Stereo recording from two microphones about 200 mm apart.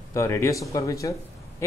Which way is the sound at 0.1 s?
15° left (ahead or behind).